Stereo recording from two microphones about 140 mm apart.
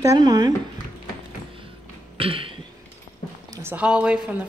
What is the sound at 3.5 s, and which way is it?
Speech, 15° right (ahead or behind).